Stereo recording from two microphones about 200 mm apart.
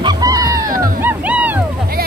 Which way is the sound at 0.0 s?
20° right (ahead or behind).